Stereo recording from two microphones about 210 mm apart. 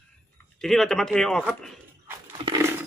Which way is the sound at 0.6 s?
Centre (ahead or behind).